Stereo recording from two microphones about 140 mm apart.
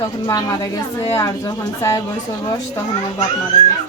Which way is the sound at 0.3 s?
25° left (ahead or behind).